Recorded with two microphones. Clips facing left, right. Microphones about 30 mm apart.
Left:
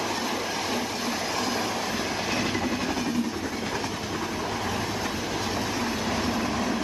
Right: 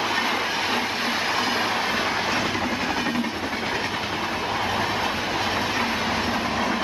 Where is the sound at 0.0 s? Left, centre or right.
Right.